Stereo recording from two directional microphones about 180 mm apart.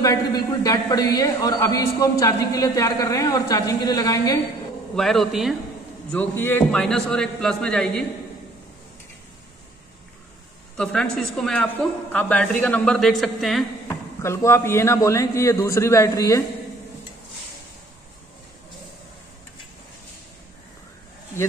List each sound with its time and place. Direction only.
0.0 s a man's voice: 20° left (ahead or behind)
4.9 s a woman's voice: centre (ahead or behind)
6.1 s a woman's voice: 10° left (ahead or behind)
10.8 s a woman's voice: 5° left (ahead or behind)
13.8 s a man's voice: 15° left (ahead or behind)